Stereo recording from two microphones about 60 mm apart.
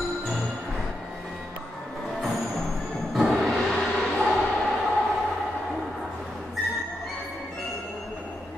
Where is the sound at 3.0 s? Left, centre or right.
Centre.